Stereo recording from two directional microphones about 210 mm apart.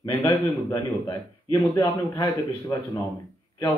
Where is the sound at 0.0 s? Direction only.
20° left (ahead or behind).